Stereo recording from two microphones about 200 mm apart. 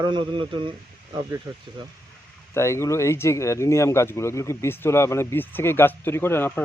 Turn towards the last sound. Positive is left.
turn(degrees=10)  # may be behind; listen again after turning